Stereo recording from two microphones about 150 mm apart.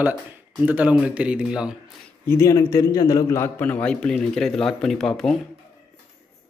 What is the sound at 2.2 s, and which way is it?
A man's voice, 20° left (ahead or behind).